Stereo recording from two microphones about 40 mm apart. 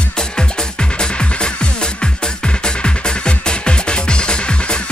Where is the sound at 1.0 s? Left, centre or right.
Left.